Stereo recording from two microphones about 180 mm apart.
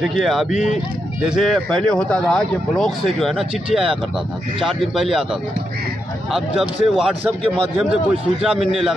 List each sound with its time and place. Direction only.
0.0 s speech: centre (ahead or behind)